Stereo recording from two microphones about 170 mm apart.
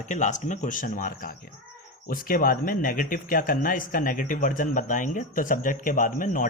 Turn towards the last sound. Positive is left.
turn(degrees=50)  # may be behind; listen again after turning